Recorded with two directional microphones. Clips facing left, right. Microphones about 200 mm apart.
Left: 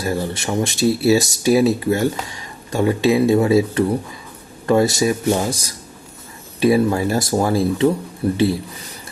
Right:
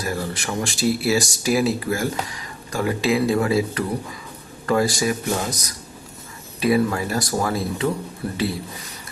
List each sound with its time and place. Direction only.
0.0 s speech: 25° left (ahead or behind)